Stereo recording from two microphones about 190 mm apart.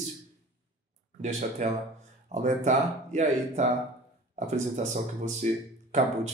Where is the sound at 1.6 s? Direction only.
40° right (ahead or behind).